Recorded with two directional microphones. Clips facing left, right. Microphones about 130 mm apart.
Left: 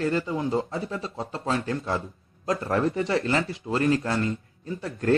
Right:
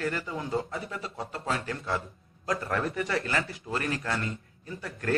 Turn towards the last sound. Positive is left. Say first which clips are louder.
# left 7 dB
turn(degrees=25)  # may be behind; listen again after turning